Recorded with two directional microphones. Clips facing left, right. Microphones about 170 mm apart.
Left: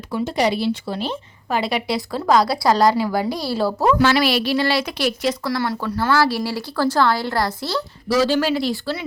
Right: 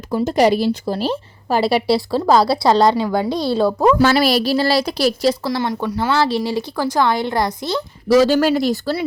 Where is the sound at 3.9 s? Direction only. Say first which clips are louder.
Right 3 dB; 40° right (ahead or behind); by 7.8 s 20° right (ahead or behind).